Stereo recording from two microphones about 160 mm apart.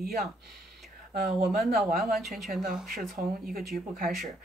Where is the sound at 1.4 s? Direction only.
Centre (ahead or behind).